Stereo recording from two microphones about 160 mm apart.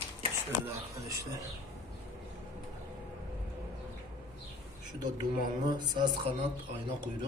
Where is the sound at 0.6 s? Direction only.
20° right (ahead or behind).